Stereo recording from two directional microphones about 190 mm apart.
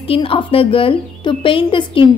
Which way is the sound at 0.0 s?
30° left (ahead or behind).